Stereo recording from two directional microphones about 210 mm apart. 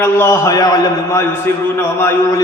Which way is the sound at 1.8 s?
10° left (ahead or behind).